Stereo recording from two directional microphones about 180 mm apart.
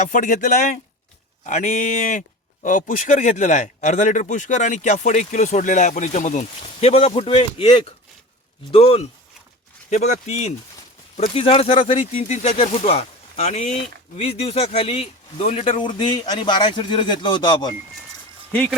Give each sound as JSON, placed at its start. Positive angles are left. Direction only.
{"t": 0.0, "sound": "speech", "side_deg": 45}